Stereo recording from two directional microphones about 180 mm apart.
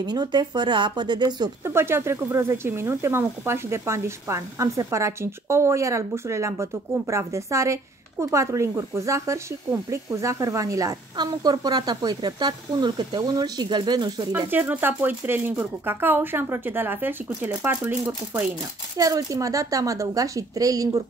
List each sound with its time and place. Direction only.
0.0 s speech: 25° right (ahead or behind)
14.5 s speech: 10° right (ahead or behind)